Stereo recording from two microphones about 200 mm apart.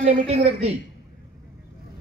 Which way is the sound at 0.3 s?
30° right (ahead or behind).